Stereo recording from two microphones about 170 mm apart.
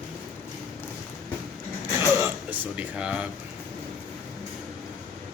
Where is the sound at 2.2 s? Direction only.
10° right (ahead or behind).